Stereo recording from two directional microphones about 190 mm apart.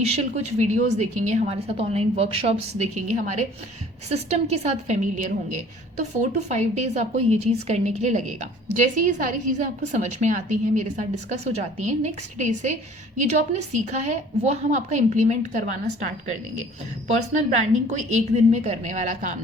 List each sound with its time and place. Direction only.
0.0 s a woman's voice: 35° right (ahead or behind)
13.8 s a woman's voice: 40° right (ahead or behind)